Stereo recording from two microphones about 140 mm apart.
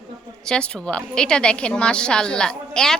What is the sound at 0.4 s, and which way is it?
A woman's voice, 5° left (ahead or behind).